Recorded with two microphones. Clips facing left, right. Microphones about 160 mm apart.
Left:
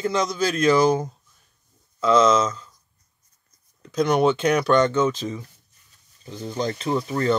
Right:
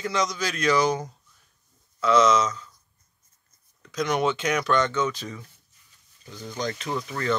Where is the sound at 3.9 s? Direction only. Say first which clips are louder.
Left 5 dB; 30° left (ahead or behind).